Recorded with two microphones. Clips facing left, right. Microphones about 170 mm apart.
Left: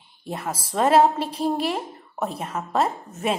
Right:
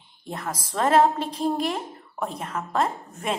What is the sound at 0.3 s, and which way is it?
A woman's voice, 10° left (ahead or behind).